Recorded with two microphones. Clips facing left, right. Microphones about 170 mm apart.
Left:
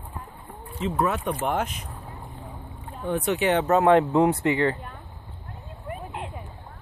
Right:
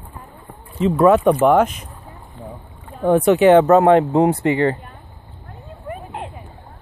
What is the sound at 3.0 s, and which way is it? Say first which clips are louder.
Speech: right 11 dB; 90° right.